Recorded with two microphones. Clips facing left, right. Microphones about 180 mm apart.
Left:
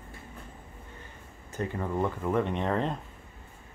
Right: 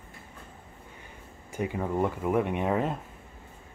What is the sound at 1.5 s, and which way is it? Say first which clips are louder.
Speech: right 2 dB; 10° right (ahead or behind).